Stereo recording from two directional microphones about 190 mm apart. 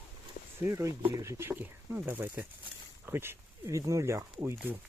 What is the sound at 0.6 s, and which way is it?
Speech, 15° right (ahead or behind).